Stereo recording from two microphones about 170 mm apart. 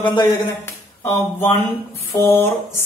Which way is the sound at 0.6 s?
15° left (ahead or behind).